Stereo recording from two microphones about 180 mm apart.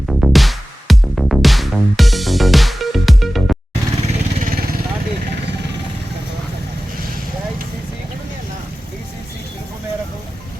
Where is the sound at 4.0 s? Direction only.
50° right (ahead or behind).